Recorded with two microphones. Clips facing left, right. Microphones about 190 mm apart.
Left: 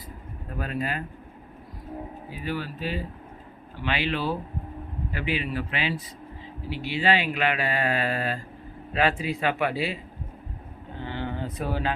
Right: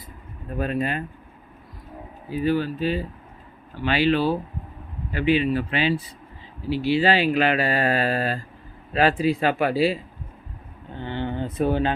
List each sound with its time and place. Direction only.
0.6 s speech: 25° right (ahead or behind)
2.4 s speech: 30° right (ahead or behind)
11.0 s speech: 25° right (ahead or behind)